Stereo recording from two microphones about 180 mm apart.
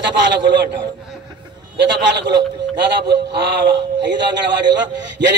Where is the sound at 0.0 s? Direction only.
75° right (ahead or behind).